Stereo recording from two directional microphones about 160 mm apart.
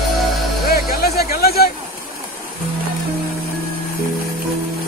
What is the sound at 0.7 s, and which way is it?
Music, 75° left (ahead or behind).